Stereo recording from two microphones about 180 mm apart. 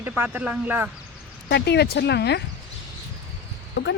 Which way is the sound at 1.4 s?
70° left (ahead or behind).